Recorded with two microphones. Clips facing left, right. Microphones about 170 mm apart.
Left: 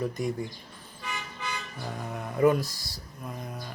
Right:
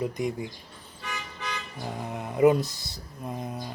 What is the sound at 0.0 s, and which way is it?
Speech, 15° right (ahead or behind).